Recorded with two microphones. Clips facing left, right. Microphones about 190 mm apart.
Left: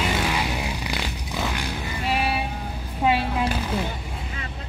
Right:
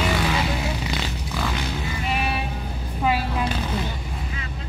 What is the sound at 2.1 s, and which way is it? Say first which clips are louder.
Vehicle: left 2 dB; 30° left (ahead or behind).